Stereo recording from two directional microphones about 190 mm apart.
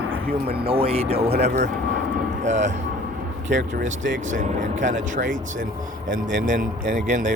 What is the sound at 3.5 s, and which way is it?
Speech, 65° right (ahead or behind).